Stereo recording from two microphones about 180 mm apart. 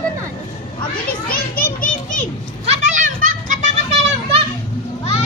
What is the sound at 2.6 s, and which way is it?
Children playing, 40° right (ahead or behind).